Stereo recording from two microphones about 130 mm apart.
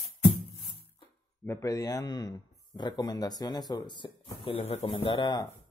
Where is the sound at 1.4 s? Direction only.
20° left (ahead or behind); by 5.4 s 35° left (ahead or behind).